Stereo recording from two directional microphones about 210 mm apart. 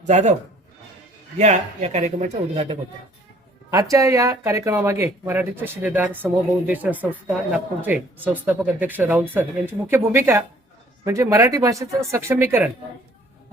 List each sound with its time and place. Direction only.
0.1 s speech: 35° right (ahead or behind)
1.4 s speech: 35° right (ahead or behind)
3.7 s speech: 15° right (ahead or behind)